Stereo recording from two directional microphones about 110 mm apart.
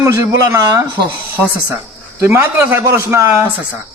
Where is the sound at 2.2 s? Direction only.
25° right (ahead or behind).